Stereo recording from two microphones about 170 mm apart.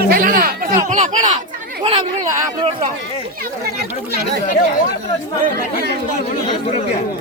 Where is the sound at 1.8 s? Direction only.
30° right (ahead or behind).